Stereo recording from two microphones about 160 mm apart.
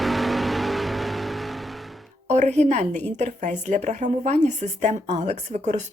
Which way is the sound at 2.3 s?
45° right (ahead or behind).